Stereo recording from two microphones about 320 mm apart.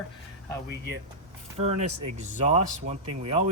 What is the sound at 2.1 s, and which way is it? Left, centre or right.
Speech, right.